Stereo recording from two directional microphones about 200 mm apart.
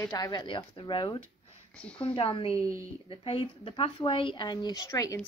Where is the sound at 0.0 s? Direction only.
20° left (ahead or behind).